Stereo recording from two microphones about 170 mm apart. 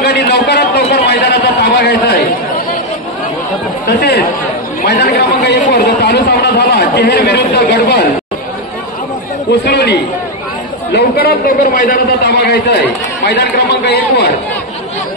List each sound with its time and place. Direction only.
0.0 s a man's voice: 70° left (ahead or behind)
3.8 s a man's voice: 75° left (ahead or behind)
9.5 s a man's voice: 80° left
10.9 s a man's voice: 65° left (ahead or behind)